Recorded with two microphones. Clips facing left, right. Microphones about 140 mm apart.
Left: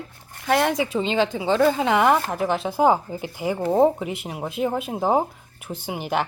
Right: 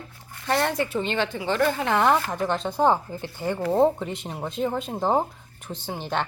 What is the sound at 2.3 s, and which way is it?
Speech, 5° left (ahead or behind).